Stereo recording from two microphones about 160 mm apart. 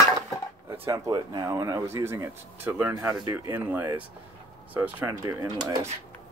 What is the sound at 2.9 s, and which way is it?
Speech, 25° right (ahead or behind).